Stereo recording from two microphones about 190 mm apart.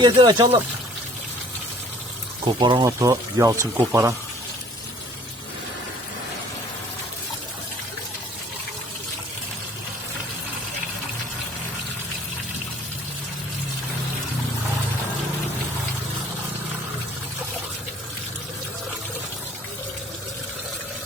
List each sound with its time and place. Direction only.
0.0 s speech: 25° right (ahead or behind)
2.4 s speech: 25° right (ahead or behind)